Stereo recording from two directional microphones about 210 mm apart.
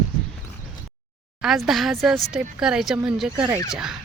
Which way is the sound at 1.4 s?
Centre (ahead or behind).